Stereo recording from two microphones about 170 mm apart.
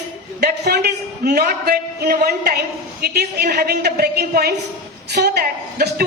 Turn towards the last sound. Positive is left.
turn(degrees=-70)  # may be behind; listen again after turning